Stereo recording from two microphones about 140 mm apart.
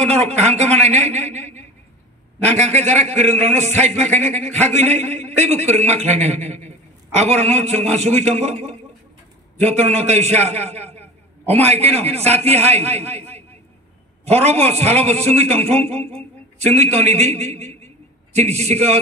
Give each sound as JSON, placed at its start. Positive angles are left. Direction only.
{"t": 0.0, "sound": "a man's voice", "side_deg": -55}
{"t": 14.3, "sound": "a man's voice", "side_deg": -50}